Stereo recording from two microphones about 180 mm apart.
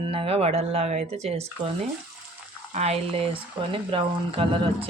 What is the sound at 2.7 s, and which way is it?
A woman's voice, 35° right (ahead or behind).